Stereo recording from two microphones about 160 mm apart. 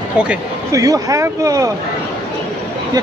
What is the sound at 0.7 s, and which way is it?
Speech, 20° right (ahead or behind).